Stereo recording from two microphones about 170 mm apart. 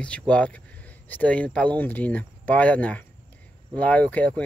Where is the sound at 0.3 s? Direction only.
5° left (ahead or behind).